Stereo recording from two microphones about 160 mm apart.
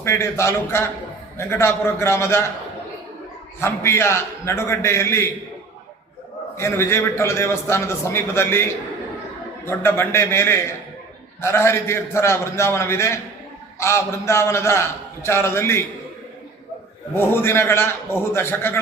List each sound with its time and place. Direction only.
0.0 s a man's voice: 15° left (ahead or behind)
3.6 s a man's voice: 15° left (ahead or behind)
6.6 s a man's voice: 15° left (ahead or behind)
9.6 s a man's voice: 15° left (ahead or behind)
17.2 s a man's voice: 15° left (ahead or behind)